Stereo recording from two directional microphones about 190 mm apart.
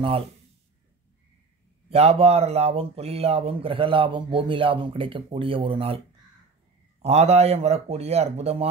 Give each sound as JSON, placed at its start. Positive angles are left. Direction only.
{"t": 1.9, "sound": "speech", "side_deg": -35}